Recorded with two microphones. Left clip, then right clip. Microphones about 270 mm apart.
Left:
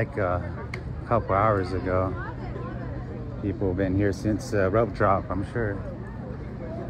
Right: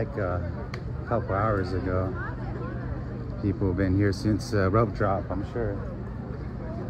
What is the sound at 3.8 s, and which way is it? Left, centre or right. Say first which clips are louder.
Speech: left 1 dB; centre.